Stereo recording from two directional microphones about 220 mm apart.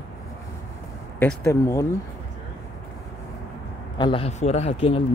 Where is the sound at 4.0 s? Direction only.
25° left (ahead or behind).